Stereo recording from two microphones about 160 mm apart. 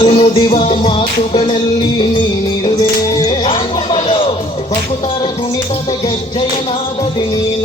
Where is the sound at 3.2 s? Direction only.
30° left (ahead or behind).